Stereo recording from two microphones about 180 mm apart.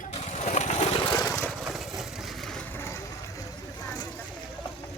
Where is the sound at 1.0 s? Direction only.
20° left (ahead or behind).